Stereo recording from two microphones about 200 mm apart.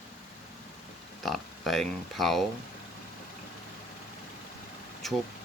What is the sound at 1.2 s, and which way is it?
Speech, centre (ahead or behind).